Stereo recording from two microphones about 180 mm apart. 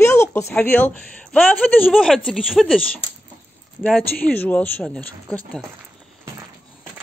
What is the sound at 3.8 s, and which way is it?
A woman's voice, 10° left (ahead or behind).